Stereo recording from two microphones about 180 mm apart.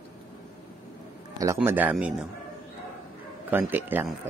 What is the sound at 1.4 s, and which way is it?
Speech, 15° right (ahead or behind).